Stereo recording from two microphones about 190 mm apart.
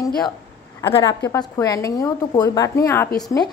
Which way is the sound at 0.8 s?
25° left (ahead or behind).